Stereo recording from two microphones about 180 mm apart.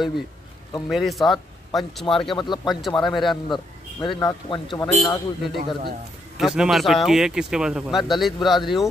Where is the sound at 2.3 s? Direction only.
25° left (ahead or behind).